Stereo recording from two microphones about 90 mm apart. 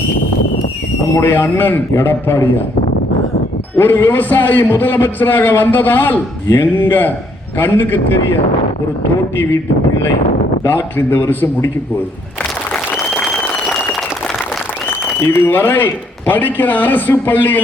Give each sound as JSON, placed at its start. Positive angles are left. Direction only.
{"t": 1.1, "sound": "a man's voice", "side_deg": 25}
{"t": 3.8, "sound": "a man's voice", "side_deg": 25}
{"t": 10.6, "sound": "a man's voice", "side_deg": 25}
{"t": 15.3, "sound": "a man's voice", "side_deg": 25}